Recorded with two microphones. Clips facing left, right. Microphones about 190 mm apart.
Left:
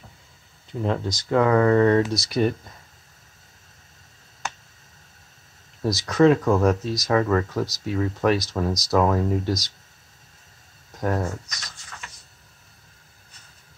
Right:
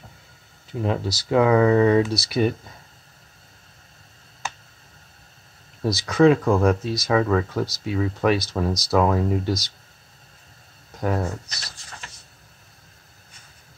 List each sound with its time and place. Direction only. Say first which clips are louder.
0.7 s speech: right 1 dB; 10° right (ahead or behind)
5.8 s speech: even; centre (ahead or behind)
11.0 s speech: even; centre (ahead or behind)
11.4 s a sound: right 1 dB; 30° right (ahead or behind)